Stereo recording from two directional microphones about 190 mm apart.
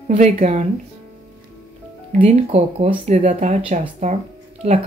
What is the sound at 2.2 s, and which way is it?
Speech, 35° right (ahead or behind).